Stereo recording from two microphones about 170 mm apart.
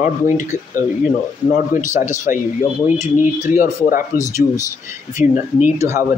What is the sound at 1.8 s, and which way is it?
Speech, 50° left (ahead or behind).